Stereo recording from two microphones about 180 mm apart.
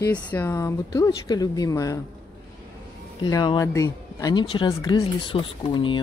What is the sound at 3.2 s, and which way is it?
Speech, 25° left (ahead or behind).